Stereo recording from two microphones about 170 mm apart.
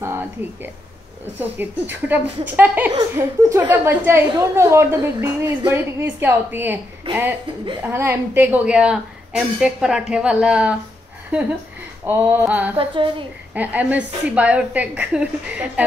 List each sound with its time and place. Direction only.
0.0 s a sound: 15° right (ahead or behind)
1.4 s speech: 10° right (ahead or behind)
7.8 s a woman's voice: 15° right (ahead or behind)
12.1 s speech: 10° right (ahead or behind)
12.7 s a woman's voice: 30° right (ahead or behind)
13.6 s speech: 10° right (ahead or behind)